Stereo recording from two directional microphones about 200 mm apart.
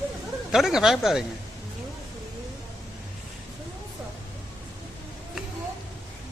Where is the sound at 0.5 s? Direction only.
Centre (ahead or behind).